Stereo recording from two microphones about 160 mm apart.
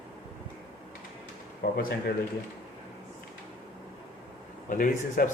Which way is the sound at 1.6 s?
75° left (ahead or behind).